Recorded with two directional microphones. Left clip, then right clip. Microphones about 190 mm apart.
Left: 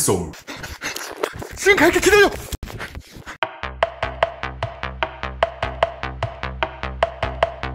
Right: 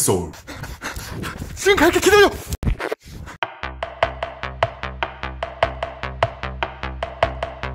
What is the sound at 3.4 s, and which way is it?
Music, centre (ahead or behind).